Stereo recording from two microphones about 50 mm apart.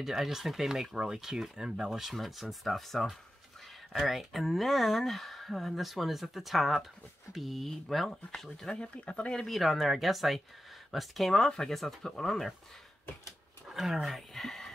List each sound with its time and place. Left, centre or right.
0.0 s speech: centre
8.6 s speech: left
9.3 s speech: centre
9.6 s speech: centre
11.3 s speech: centre
13.7 s a sound: centre
14.0 s speech: centre